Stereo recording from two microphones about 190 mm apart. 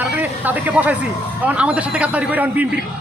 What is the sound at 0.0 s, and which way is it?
Speech, 10° right (ahead or behind).